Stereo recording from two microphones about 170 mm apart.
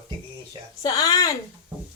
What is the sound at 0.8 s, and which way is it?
Speech, 20° left (ahead or behind).